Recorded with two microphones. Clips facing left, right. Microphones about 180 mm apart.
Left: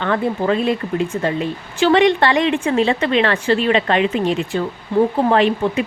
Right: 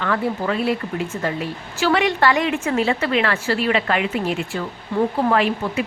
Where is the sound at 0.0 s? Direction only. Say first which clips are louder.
Left 3 dB; 30° left (ahead or behind).